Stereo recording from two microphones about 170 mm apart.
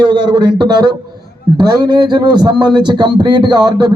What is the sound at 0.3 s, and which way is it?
A man's voice, 25° right (ahead or behind).